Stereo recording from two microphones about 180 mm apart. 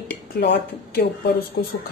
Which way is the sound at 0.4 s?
60° left (ahead or behind).